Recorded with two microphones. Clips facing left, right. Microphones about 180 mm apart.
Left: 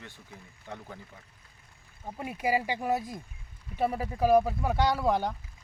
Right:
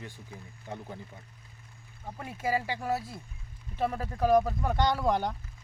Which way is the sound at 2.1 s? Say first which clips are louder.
Left 2 dB; 15° left (ahead or behind).